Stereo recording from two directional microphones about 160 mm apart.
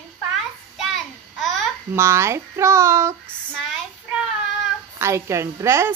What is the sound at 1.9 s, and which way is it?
A woman's voice, 15° right (ahead or behind).